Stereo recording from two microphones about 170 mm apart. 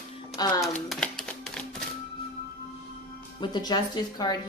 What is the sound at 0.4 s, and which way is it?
Speech, 25° left (ahead or behind).